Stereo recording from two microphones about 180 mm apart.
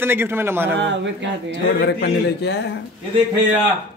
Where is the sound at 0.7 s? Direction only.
85° right.